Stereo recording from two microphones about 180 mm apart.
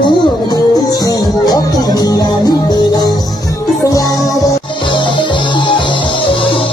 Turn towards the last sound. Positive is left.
turn(degrees=25)  # may be behind; listen again after turning